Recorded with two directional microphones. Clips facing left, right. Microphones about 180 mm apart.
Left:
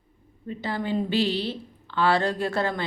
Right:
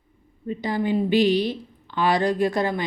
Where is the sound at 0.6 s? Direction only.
15° right (ahead or behind).